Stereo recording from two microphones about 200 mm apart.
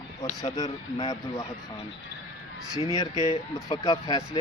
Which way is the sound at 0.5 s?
20° left (ahead or behind).